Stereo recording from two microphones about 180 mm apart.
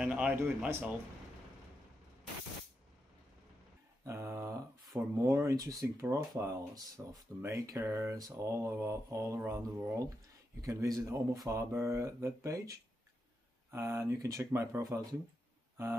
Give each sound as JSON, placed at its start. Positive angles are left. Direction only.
{"t": 0.0, "sound": "speech", "side_deg": -5}
{"t": 4.0, "sound": "speech", "side_deg": -15}